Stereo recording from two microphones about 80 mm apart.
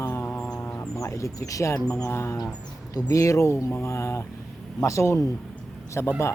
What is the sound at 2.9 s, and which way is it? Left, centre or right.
Speech, left.